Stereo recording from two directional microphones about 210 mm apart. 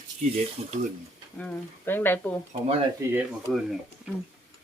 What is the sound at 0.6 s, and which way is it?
Speech, 30° right (ahead or behind).